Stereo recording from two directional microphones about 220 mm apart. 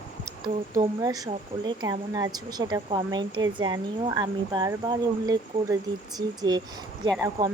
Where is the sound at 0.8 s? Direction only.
15° right (ahead or behind).